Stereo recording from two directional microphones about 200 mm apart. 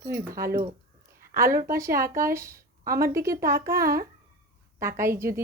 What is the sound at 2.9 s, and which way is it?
Speech, 50° right (ahead or behind).